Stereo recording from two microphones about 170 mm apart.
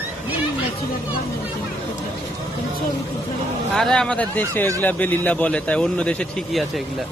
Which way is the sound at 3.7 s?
5° left (ahead or behind).